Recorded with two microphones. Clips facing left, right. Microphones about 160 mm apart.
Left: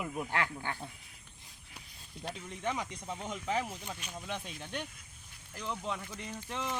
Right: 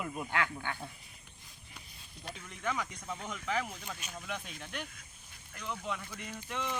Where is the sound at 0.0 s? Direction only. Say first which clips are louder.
Left 1 dB; 10° left (ahead or behind).